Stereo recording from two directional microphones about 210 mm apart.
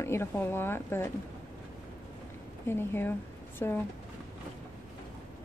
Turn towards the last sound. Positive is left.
turn(degrees=10)  # may be behind; listen again after turning